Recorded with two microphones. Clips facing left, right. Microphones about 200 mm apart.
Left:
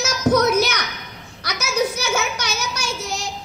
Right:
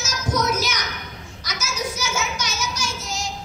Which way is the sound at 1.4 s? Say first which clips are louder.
Left 7 dB; 60° left (ahead or behind).